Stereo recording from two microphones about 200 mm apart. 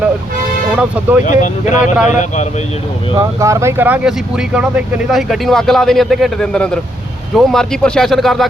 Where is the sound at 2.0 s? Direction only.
35° left (ahead or behind).